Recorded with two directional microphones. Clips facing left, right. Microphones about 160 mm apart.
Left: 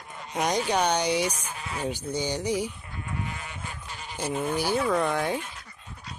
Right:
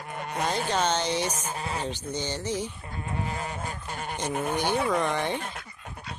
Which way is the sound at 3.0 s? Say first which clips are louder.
Right 3 dB; 35° right (ahead or behind).